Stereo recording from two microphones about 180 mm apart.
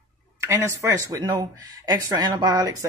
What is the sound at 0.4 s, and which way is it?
Speech, 15° right (ahead or behind).